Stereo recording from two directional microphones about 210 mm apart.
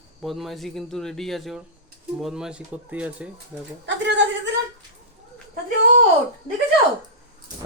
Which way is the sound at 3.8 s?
60° right (ahead or behind).